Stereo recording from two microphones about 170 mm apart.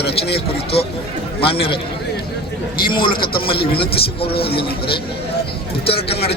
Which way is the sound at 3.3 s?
30° left (ahead or behind).